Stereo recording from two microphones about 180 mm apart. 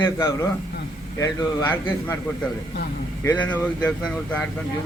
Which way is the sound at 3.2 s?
10° left (ahead or behind).